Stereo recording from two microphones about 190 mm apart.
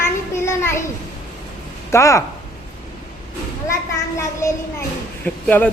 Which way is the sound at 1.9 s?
15° left (ahead or behind).